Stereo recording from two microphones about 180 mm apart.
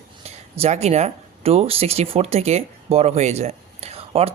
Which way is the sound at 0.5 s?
35° right (ahead or behind).